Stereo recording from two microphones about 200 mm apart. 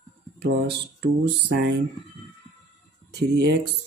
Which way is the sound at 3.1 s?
55° right (ahead or behind).